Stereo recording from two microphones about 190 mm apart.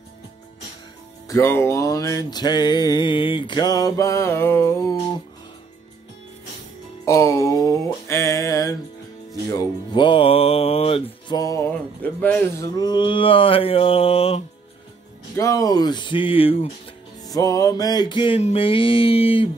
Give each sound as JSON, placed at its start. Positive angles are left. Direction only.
{"t": 1.2, "sound": "music", "side_deg": 15}
{"t": 7.1, "sound": "a sound", "side_deg": 15}
{"t": 9.3, "sound": "music", "side_deg": 20}
{"t": 12.7, "sound": "music", "side_deg": 20}
{"t": 15.3, "sound": "music", "side_deg": 15}
{"t": 17.3, "sound": "music", "side_deg": 20}